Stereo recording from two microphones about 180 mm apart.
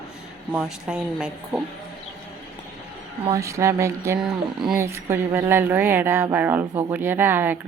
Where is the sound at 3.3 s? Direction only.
15° right (ahead or behind).